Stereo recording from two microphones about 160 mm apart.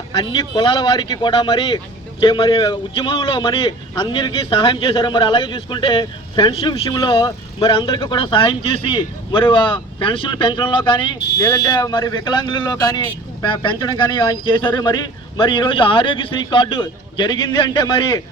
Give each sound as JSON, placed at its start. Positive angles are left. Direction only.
{"t": 0.1, "sound": "a man's voice", "side_deg": 25}